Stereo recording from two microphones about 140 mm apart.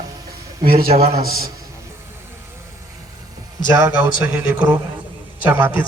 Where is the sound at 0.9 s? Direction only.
50° right (ahead or behind).